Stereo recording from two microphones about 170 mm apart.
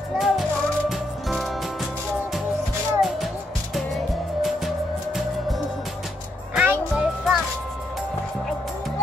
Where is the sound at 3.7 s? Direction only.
Centre (ahead or behind).